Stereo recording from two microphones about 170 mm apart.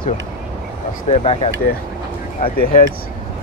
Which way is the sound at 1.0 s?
35° left (ahead or behind).